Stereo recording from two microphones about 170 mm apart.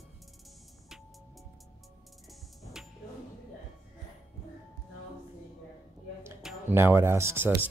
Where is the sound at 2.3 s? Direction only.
Centre (ahead or behind).